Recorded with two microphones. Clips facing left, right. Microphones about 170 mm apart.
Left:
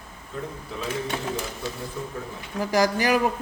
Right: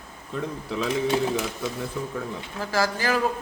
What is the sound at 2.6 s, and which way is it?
Speech, 15° left (ahead or behind).